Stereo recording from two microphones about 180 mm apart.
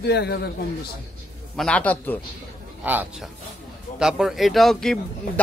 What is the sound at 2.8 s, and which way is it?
A man's voice, 10° right (ahead or behind).